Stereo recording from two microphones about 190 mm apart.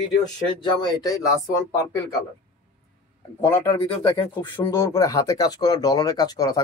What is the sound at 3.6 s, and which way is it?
Speech, 25° left (ahead or behind).